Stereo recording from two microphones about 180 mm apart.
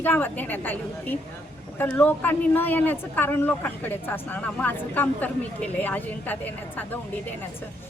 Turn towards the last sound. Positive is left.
turn(degrees=10)  # may be behind; listen again after turning